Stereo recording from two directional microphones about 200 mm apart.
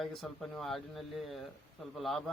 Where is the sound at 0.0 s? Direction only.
Centre (ahead or behind).